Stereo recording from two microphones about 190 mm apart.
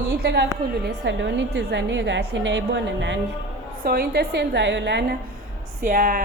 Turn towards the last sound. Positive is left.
turn(degrees=-45)  # may be behind; listen again after turning